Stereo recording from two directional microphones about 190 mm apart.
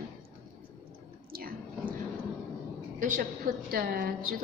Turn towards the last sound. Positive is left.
turn(degrees=-50)  # may be behind; listen again after turning